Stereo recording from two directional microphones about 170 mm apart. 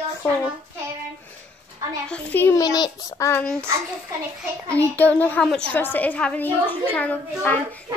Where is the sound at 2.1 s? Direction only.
10° left (ahead or behind).